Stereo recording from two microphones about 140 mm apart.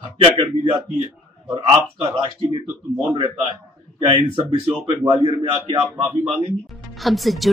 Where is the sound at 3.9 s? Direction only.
35° right (ahead or behind).